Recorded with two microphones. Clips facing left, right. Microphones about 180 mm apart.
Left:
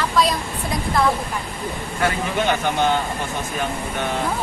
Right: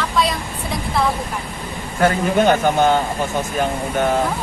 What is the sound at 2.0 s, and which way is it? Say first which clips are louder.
A man's voice: right 6 dB; 45° right (ahead or behind).